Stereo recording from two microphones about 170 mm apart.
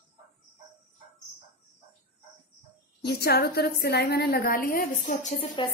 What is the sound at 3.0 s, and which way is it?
A woman's voice, 70° left (ahead or behind).